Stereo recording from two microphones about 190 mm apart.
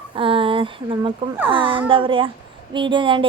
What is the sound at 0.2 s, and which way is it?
A woman's voice, 30° right (ahead or behind).